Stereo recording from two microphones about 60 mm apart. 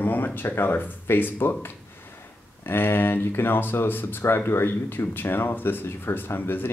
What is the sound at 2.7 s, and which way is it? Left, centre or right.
Speech, left.